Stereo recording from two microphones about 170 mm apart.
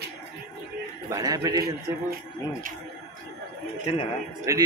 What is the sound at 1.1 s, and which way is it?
Speech, 20° right (ahead or behind).